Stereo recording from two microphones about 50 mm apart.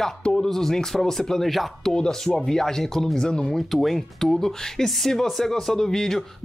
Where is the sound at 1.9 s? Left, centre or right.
Centre.